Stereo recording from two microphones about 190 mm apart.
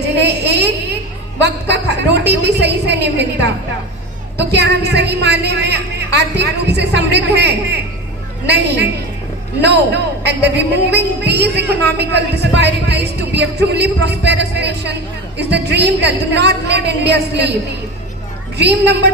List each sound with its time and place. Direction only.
0.2 s a sound: 60° right (ahead or behind)
1.4 s a woman's voice: 60° right (ahead or behind)
18.5 s a woman's voice: 65° right (ahead or behind)